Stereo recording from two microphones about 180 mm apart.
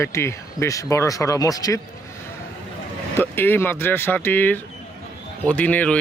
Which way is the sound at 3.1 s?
10° left (ahead or behind).